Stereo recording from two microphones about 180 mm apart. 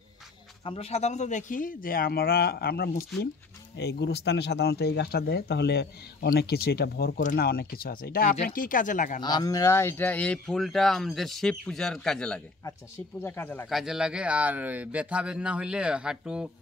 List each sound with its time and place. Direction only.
0.7 s speech: 35° left (ahead or behind); by 3.1 s 60° left (ahead or behind)
3.7 s speech: 70° left (ahead or behind); by 9.2 s 45° left (ahead or behind)
9.2 s speech: 25° left (ahead or behind); by 12.4 s 5° left (ahead or behind)
12.6 s speech: 15° left (ahead or behind)
13.7 s speech: centre (ahead or behind)